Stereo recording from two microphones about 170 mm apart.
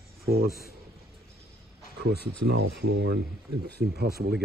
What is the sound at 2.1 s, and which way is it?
Speech, 75° right (ahead or behind).